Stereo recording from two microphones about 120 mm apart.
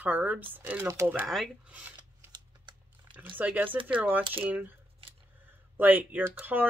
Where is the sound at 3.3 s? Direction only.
15° right (ahead or behind).